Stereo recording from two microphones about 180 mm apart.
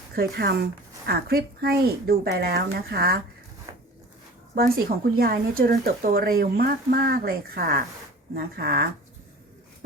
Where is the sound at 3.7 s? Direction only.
20° right (ahead or behind).